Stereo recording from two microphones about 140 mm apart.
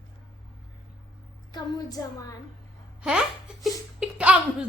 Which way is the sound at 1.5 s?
25° left (ahead or behind).